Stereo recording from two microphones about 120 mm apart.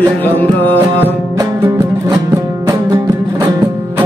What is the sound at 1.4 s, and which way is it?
Music, 30° right (ahead or behind).